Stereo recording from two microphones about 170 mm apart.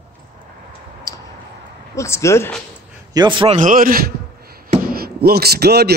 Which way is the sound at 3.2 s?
30° right (ahead or behind).